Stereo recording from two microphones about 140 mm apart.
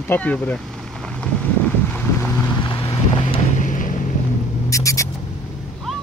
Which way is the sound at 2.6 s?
35° left (ahead or behind).